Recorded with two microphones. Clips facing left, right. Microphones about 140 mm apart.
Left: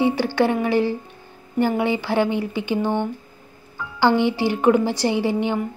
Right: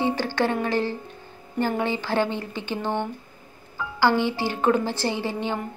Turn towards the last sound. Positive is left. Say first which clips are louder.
# left 6 dB
turn(degrees=15)  # may be behind; listen again after turning